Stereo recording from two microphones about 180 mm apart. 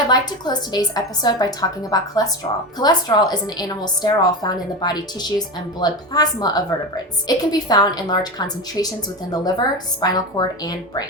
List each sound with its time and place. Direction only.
0.1 s a woman's voice: 25° left (ahead or behind)